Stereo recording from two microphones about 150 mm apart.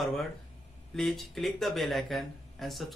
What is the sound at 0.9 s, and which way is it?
Speech, centre (ahead or behind).